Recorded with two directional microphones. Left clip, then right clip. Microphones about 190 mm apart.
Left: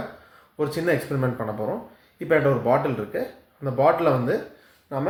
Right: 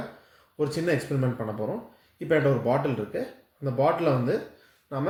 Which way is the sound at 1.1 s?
15° right (ahead or behind).